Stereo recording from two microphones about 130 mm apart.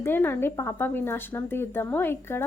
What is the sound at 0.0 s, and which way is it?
A woman's voice, 15° left (ahead or behind).